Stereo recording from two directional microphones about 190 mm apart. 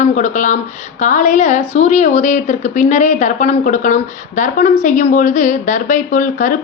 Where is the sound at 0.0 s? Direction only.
40° left (ahead or behind).